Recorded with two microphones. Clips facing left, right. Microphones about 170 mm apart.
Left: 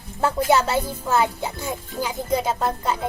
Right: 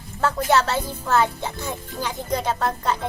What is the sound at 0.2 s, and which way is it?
Speech, 10° left (ahead or behind).